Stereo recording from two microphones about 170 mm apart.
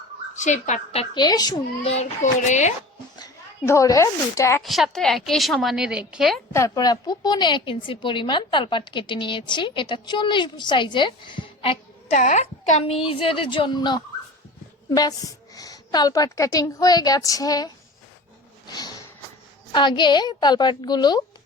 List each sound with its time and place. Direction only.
0.3 s a child's voice: 45° left (ahead or behind)
1.1 s a woman's voice: 25° left (ahead or behind)
1.8 s a child's voice: 40° left (ahead or behind)
3.7 s speech: 20° left (ahead or behind)
4.6 s a woman's voice: centre (ahead or behind)
6.5 s a woman's voice: 20° left (ahead or behind); by 13.0 s 45° left (ahead or behind)
13.1 s a woman's voice: 30° left (ahead or behind)
18.6 s a sound: 25° left (ahead or behind)
19.7 s a woman's voice: 25° left (ahead or behind)